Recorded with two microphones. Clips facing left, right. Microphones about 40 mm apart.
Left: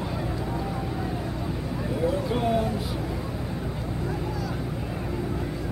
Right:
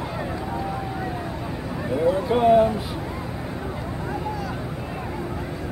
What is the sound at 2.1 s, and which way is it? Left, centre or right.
Speech, right.